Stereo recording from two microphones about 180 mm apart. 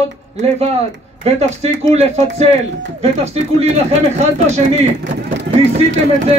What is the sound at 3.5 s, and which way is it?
Speech, 35° right (ahead or behind).